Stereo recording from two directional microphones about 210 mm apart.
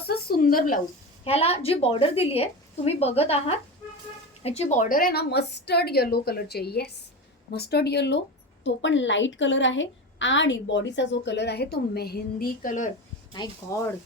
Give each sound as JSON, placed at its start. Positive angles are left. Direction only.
{"t": 0.1, "sound": "a sound", "side_deg": 45}
{"t": 1.2, "sound": "a woman's voice", "side_deg": 30}
{"t": 13.3, "sound": "speech", "side_deg": 20}